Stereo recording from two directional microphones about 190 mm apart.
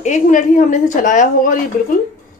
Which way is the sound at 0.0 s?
40° left (ahead or behind).